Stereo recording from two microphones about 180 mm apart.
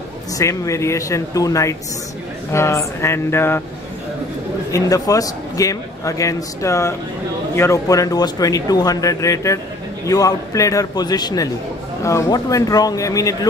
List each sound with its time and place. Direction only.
0.4 s a man's voice: 15° left (ahead or behind)
4.7 s a man's voice: 20° left (ahead or behind)